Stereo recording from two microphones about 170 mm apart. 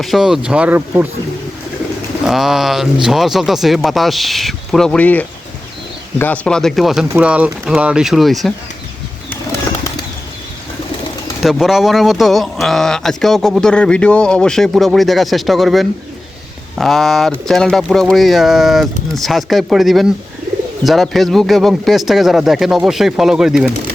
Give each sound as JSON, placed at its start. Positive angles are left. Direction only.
{"t": 0.0, "sound": "a man's voice", "side_deg": 0}
{"t": 2.2, "sound": "a man's voice", "side_deg": 0}
{"t": 9.3, "sound": "bird", "side_deg": 15}
{"t": 11.4, "sound": "a man's voice", "side_deg": 0}